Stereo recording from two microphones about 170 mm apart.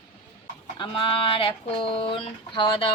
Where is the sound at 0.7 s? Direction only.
30° left (ahead or behind).